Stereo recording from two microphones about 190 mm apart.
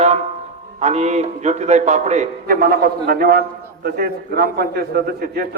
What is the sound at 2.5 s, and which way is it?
A man's voice, 50° right (ahead or behind).